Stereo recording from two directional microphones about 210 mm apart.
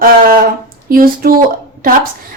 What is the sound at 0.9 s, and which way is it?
Speech, 45° right (ahead or behind).